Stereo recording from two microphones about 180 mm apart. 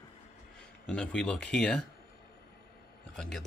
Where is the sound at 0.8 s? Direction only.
5° left (ahead or behind).